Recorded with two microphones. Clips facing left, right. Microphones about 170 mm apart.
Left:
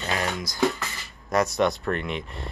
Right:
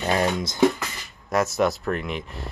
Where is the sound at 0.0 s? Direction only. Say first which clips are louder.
Right 6 dB; 35° right (ahead or behind).